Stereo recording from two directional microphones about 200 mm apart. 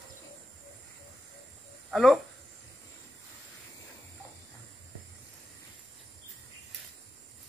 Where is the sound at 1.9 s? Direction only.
Centre (ahead or behind).